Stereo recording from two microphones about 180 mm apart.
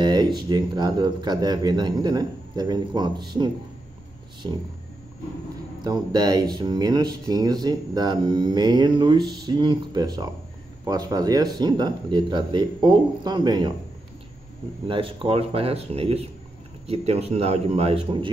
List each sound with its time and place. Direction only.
0.0 s a sound: 25° right (ahead or behind)
0.5 s speech: 25° right (ahead or behind)
5.9 s speech: 20° right (ahead or behind)
14.9 s speech: 30° right (ahead or behind)